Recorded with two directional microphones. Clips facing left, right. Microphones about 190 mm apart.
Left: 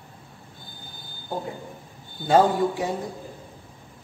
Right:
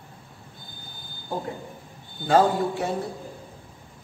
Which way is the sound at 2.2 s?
20° left (ahead or behind).